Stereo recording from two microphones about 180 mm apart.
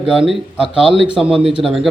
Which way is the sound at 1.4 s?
30° right (ahead or behind).